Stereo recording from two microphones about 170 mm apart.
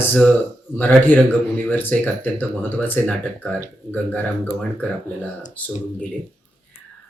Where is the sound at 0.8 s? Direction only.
10° left (ahead or behind).